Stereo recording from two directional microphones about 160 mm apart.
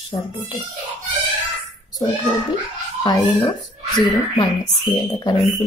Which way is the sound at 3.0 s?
25° left (ahead or behind).